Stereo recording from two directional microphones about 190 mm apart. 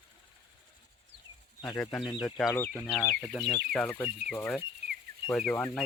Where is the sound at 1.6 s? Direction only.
15° left (ahead or behind).